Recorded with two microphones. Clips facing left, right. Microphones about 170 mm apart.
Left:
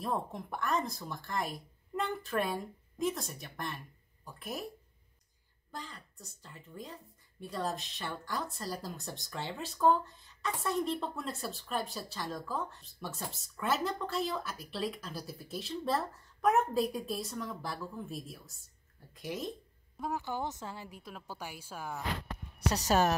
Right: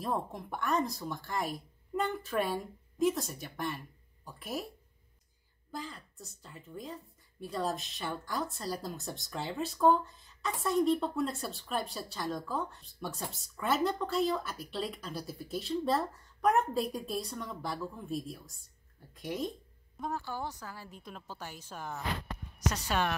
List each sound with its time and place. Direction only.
0.0 s speech: centre (ahead or behind)
5.7 s speech: centre (ahead or behind)
20.0 s speech: 15° left (ahead or behind)
20.9 s a woman's voice: 5° left (ahead or behind)
22.7 s speech: 40° left (ahead or behind)